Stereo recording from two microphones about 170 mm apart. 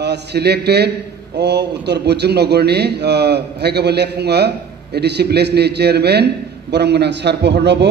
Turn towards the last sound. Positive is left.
turn(degrees=-85)